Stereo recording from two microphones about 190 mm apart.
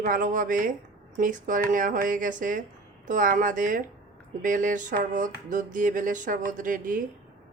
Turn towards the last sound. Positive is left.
turn(degrees=-45)  # may be behind; listen again after turning